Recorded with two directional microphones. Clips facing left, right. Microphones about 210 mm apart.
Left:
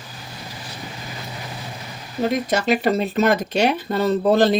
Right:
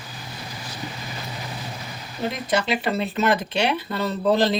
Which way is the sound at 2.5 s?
45° left (ahead or behind).